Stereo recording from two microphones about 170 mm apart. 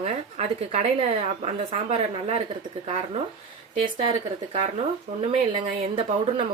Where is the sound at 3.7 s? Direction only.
30° right (ahead or behind).